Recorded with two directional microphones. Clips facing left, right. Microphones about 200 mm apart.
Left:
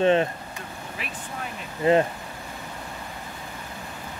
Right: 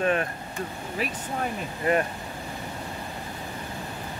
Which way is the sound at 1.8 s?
25° left (ahead or behind).